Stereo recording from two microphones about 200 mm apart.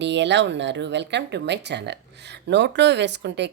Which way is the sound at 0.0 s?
60° right (ahead or behind).